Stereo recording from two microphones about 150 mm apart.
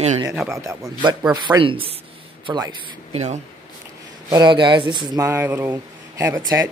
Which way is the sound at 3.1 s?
50° right (ahead or behind).